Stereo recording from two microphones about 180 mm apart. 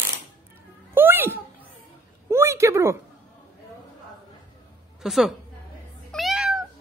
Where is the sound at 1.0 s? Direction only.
10° right (ahead or behind).